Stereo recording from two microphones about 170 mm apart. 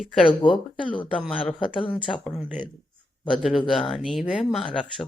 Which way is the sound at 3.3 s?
Centre (ahead or behind).